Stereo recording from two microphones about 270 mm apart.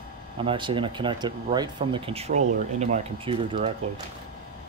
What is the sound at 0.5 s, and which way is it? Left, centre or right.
Speech, centre.